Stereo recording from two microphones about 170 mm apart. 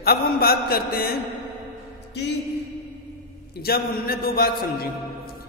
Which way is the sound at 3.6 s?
65° left (ahead or behind).